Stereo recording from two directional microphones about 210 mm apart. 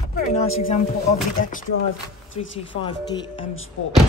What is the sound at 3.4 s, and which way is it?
Speech, 75° left (ahead or behind).